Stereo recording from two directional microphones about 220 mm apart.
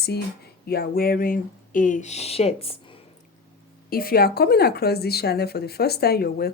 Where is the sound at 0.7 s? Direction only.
45° left (ahead or behind); by 2.7 s 25° left (ahead or behind).